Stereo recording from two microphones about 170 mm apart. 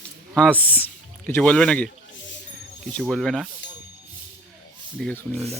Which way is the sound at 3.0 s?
5° left (ahead or behind).